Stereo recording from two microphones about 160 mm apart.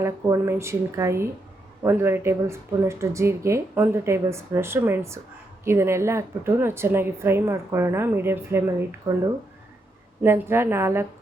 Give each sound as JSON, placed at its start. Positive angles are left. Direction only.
{"t": 0.0, "sound": "a woman's voice", "side_deg": -15}
{"t": 10.2, "sound": "a woman's voice", "side_deg": -15}